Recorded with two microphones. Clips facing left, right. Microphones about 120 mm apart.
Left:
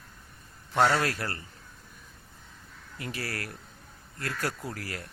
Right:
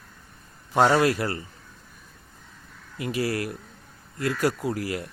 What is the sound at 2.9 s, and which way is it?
A man's voice, 15° right (ahead or behind).